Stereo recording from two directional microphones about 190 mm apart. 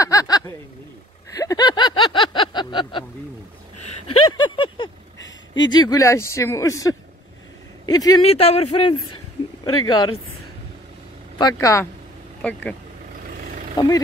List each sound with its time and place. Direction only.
0.0 s a sound: 20° left (ahead or behind)
4.3 s a sound: 25° left (ahead or behind)
5.7 s speech: 20° left (ahead or behind)
8.2 s speech: 30° left (ahead or behind)
11.3 s speech: 20° left (ahead or behind)
13.7 s speech: 20° left (ahead or behind)